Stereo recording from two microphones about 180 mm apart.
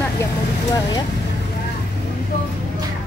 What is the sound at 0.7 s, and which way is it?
Speech, 20° left (ahead or behind).